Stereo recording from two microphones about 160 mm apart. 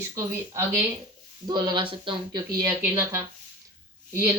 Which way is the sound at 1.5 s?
30° right (ahead or behind).